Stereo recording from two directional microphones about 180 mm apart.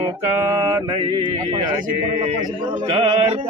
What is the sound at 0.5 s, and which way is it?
Male singing, 20° right (ahead or behind).